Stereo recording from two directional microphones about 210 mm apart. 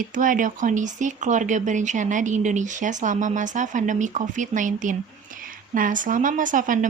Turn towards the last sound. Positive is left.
turn(degrees=-40)  # may be behind; listen again after turning